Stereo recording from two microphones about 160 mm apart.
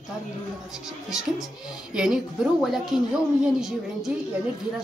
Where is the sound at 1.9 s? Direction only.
5° right (ahead or behind).